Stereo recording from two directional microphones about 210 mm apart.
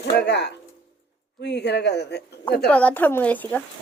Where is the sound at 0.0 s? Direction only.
55° left (ahead or behind).